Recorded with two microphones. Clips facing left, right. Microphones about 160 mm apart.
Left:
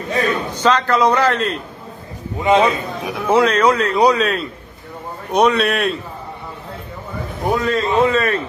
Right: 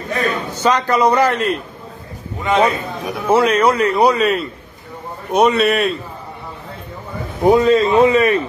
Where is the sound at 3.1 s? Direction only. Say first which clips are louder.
Right 1 dB; 5° right (ahead or behind).